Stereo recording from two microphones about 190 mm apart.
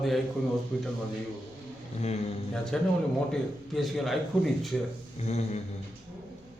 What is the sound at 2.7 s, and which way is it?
A man's voice, 5° left (ahead or behind).